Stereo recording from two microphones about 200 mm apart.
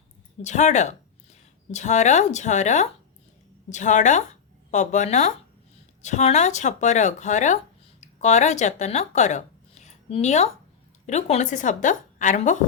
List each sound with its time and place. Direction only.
0.4 s speech: 35° left (ahead or behind)